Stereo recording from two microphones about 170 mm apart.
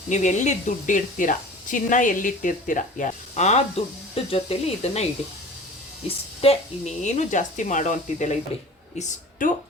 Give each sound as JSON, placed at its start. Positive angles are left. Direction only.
{"t": 0.1, "sound": "speech", "side_deg": 45}
{"t": 6.1, "sound": "speech", "side_deg": 35}